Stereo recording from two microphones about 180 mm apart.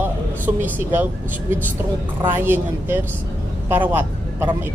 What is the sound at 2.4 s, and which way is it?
Speech, 10° right (ahead or behind).